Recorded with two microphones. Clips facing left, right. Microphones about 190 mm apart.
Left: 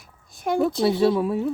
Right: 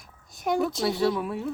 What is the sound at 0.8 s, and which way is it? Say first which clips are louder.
Speech: left 6 dB; 25° left (ahead or behind).